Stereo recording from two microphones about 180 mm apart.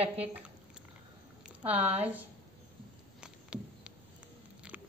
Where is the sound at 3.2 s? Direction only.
5° right (ahead or behind).